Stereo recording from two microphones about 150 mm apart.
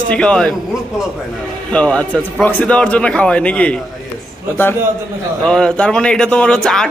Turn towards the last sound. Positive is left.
turn(degrees=5)  # may be behind; listen again after turning